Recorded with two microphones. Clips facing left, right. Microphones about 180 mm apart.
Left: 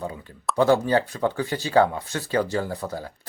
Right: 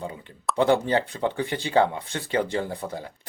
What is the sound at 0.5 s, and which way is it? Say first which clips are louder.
Speech: left 2 dB; 20° right (ahead or behind).